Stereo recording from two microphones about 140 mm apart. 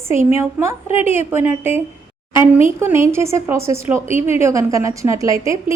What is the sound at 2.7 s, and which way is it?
A woman's voice, 20° right (ahead or behind).